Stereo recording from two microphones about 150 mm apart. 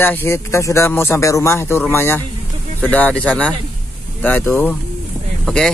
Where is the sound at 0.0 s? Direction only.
15° left (ahead or behind).